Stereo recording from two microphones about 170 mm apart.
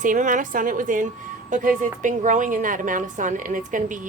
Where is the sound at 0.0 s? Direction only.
50° right (ahead or behind).